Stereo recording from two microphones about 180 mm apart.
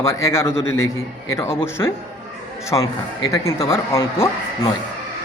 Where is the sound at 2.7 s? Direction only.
25° left (ahead or behind).